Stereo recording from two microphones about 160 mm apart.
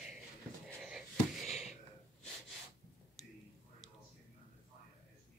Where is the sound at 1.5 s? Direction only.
45° left (ahead or behind).